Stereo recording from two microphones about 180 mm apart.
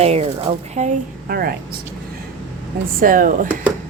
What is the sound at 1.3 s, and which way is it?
Speech, 60° right (ahead or behind).